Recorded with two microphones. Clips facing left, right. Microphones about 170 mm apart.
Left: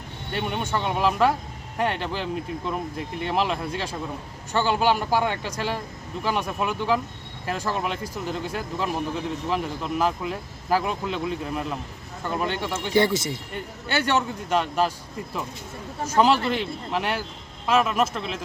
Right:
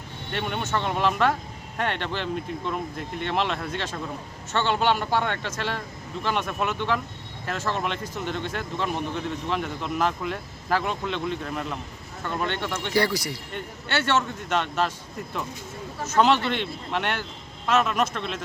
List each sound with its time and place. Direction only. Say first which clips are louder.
0.3 s speech: left 1 dB; 10° left (ahead or behind)
12.9 s speech: left 3 dB; 20° left (ahead or behind)
13.8 s speech: left 1 dB; 15° left (ahead or behind)
16.0 s speech: left 1 dB; 10° left (ahead or behind)